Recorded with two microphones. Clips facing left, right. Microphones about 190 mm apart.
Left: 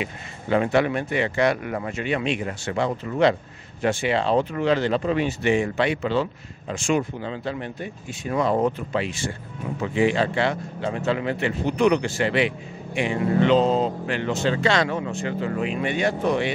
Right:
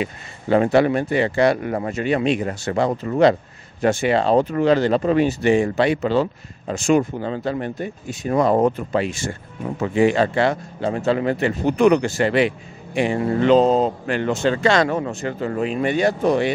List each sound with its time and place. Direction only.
0.0 s speech: 40° right (ahead or behind)